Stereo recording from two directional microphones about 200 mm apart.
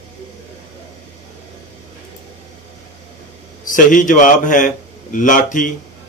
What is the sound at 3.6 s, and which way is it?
A man's voice, 40° left (ahead or behind).